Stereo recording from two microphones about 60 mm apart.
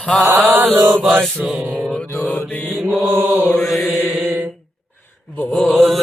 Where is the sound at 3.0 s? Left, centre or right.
Right.